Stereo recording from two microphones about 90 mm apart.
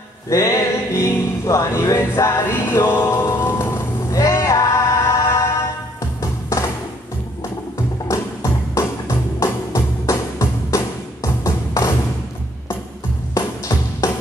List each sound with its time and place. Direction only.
0.3 s music: 35° left (ahead or behind)
4.1 s music: 40° left (ahead or behind)
8.1 s music: 40° left (ahead or behind)
13.3 s music: 40° left (ahead or behind)